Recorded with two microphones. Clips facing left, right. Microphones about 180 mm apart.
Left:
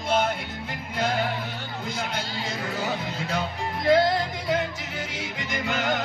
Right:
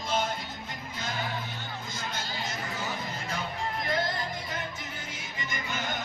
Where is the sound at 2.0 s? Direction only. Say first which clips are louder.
Left 4 dB; 65° left (ahead or behind).